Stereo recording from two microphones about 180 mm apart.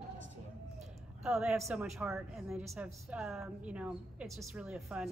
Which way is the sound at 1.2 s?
Centre (ahead or behind).